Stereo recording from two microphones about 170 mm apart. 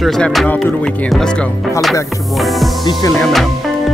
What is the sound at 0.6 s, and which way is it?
Music, 5° left (ahead or behind).